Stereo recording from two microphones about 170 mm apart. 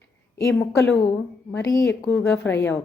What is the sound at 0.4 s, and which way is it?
A woman's voice, 15° left (ahead or behind).